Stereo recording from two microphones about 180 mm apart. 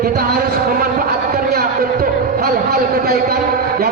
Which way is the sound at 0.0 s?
60° right (ahead or behind).